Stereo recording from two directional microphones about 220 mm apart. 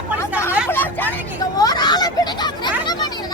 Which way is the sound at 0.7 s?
10° left (ahead or behind).